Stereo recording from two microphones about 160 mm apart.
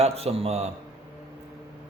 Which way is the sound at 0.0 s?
40° right (ahead or behind).